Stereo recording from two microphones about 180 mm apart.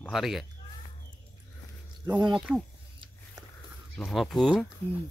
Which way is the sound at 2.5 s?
10° right (ahead or behind).